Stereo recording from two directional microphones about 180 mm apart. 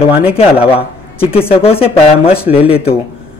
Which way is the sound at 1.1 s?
30° left (ahead or behind).